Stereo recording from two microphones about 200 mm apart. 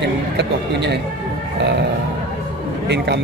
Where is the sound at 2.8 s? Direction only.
60° right (ahead or behind).